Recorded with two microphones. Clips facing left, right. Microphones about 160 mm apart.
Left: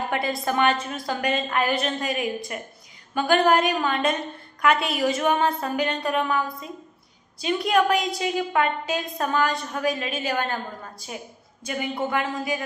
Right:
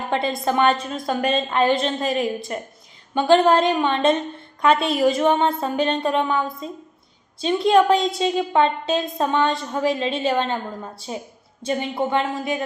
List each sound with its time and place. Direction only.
0.1 s a woman's voice: 25° right (ahead or behind)